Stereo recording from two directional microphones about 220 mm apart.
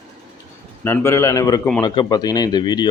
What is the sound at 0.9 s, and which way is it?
Speech, 15° left (ahead or behind).